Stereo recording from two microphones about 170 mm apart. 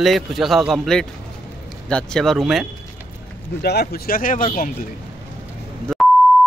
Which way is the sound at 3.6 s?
70° left (ahead or behind).